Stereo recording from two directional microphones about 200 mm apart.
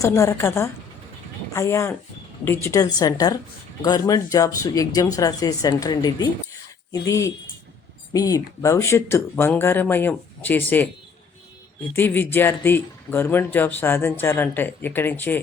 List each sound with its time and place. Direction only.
0.0 s speech: 15° left (ahead or behind)
11.9 s speech: 10° left (ahead or behind)